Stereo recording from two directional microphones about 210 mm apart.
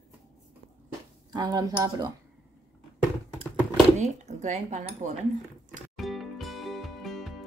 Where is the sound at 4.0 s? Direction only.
35° right (ahead or behind).